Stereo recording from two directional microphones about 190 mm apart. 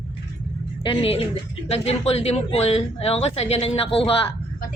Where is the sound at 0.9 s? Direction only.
30° left (ahead or behind).